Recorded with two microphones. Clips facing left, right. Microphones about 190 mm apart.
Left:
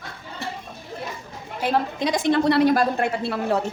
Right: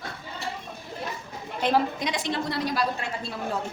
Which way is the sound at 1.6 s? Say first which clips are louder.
Left 1 dB; 5° left (ahead or behind).